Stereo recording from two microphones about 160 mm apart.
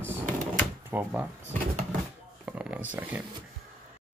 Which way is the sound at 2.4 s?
10° right (ahead or behind).